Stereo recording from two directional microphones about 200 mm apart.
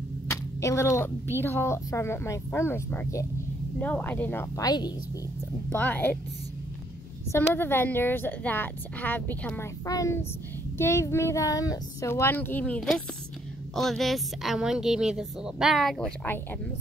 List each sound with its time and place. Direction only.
0.3 s a woman's voice: 15° left (ahead or behind)
5.7 s a woman's voice: 10° left (ahead or behind)
7.3 s a woman's voice: 10° left (ahead or behind)